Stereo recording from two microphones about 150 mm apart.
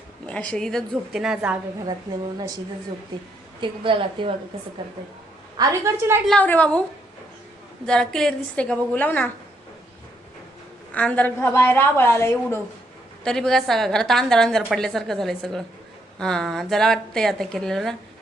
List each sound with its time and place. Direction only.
0.3 s a woman's voice: 10° left (ahead or behind)
3.6 s a woman's voice: 35° right (ahead or behind)
5.5 s a woman's voice: 20° right (ahead or behind)
6.2 s a woman's voice: 10° left (ahead or behind)
7.9 s a woman's voice: 5° left (ahead or behind)
10.9 s a woman's voice: 10° left (ahead or behind)
13.2 s a woman's voice: 5° left (ahead or behind)